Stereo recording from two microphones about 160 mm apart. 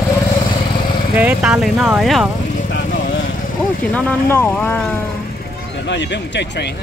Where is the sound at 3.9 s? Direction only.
10° left (ahead or behind).